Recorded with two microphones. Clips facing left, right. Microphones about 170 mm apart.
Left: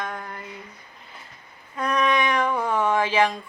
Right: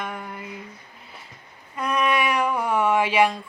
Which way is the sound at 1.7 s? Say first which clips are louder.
Even; 5° right (ahead or behind).